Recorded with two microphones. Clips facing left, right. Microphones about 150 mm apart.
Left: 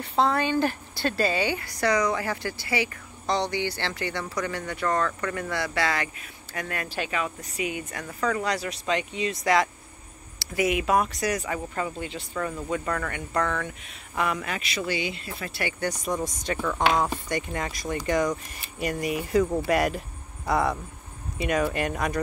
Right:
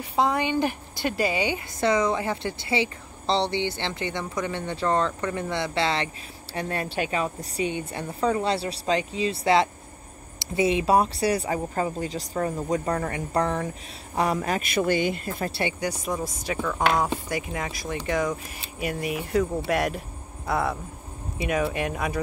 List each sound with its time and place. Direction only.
0.0 s a woman's voice: 10° right (ahead or behind); by 15.5 s 45° right (ahead or behind)
15.8 s speech: 5° right (ahead or behind)